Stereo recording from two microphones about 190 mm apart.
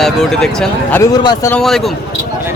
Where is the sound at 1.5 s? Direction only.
Centre (ahead or behind).